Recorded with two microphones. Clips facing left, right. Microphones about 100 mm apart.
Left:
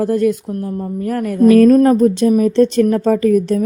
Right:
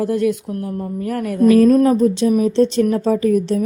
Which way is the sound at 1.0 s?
40° left (ahead or behind).